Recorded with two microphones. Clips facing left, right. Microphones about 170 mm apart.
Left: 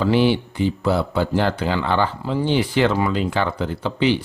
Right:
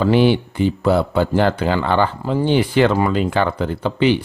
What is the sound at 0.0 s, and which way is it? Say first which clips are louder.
Speech: right 3 dB; 55° right (ahead or behind).